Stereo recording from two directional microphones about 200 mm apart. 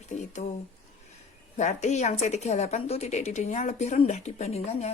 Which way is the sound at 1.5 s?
35° left (ahead or behind).